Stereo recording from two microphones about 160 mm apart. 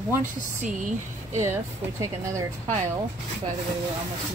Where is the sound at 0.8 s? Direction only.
55° right (ahead or behind).